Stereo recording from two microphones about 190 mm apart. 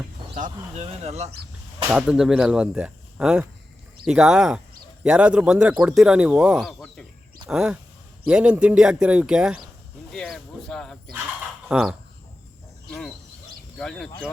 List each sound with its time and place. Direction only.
0.3 s speech: 40° right (ahead or behind)
1.9 s speech: 5° right (ahead or behind)
12.9 s bird: 5° left (ahead or behind)
13.7 s speech: 5° left (ahead or behind)